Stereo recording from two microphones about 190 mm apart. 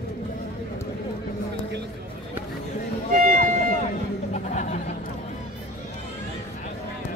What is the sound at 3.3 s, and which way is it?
Music, 45° right (ahead or behind).